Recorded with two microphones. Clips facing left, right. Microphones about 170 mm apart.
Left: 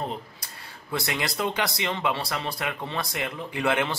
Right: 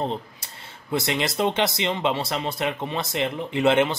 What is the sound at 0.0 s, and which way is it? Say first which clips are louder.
Speech: right 5 dB; 25° right (ahead or behind).